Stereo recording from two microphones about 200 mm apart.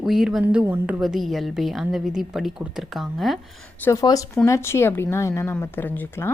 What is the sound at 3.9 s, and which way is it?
Speech, 15° left (ahead or behind).